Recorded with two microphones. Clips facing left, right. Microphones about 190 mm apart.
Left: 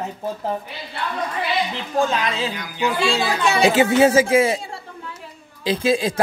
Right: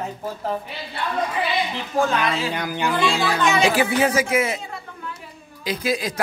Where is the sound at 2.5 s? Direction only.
60° right (ahead or behind).